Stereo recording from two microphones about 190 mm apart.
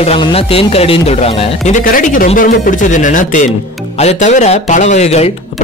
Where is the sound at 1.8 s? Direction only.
45° left (ahead or behind).